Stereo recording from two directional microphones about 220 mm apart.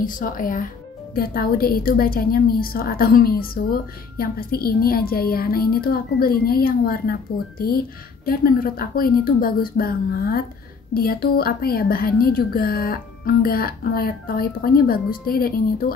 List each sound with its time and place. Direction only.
0.0 s a woman's voice: 40° left (ahead or behind)